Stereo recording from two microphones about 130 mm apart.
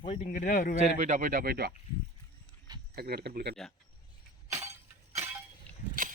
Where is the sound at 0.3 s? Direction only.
75° left (ahead or behind).